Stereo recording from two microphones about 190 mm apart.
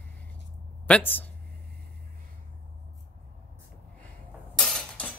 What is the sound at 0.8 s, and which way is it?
Speech, 10° left (ahead or behind).